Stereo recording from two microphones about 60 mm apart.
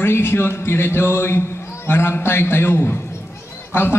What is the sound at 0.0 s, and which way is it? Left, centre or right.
A man's voice, left.